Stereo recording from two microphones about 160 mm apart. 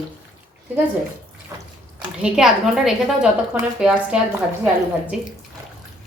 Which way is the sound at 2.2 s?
5° right (ahead or behind).